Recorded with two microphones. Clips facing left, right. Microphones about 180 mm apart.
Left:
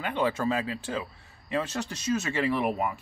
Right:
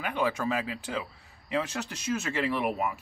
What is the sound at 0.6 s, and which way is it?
Speech, 10° right (ahead or behind).